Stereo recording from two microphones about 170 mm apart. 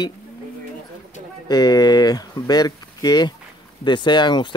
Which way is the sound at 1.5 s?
25° left (ahead or behind).